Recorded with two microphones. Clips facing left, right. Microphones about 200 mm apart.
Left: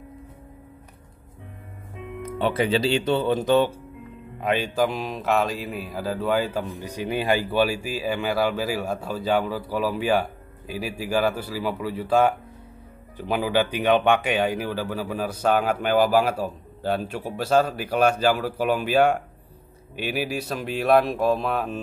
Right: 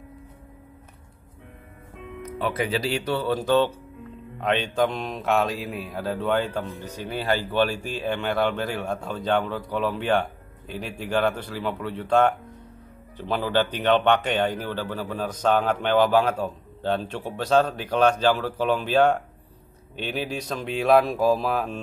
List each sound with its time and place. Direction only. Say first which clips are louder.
2.3 s speech: left 4 dB; 25° left (ahead or behind); by 21.7 s centre (ahead or behind)